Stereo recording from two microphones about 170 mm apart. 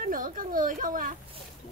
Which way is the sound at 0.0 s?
55° right (ahead or behind).